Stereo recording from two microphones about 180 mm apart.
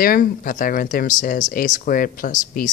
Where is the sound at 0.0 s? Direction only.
55° left (ahead or behind).